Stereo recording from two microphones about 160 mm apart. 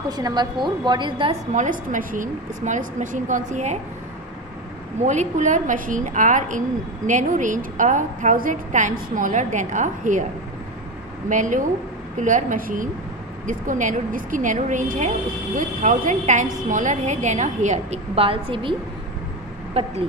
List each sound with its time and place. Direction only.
0.1 s a woman's voice: 25° right (ahead or behind)
1.5 s a woman's voice: 50° right (ahead or behind)
5.0 s a woman's voice: 50° right (ahead or behind)
11.2 s a woman's voice: 55° right (ahead or behind)